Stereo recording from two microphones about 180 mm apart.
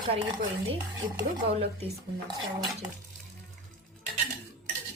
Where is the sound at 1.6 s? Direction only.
30° right (ahead or behind).